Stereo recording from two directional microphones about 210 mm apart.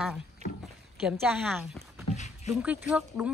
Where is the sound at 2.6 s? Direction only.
5° right (ahead or behind).